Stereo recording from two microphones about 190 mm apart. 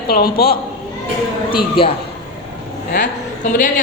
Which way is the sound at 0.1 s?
55° left (ahead or behind).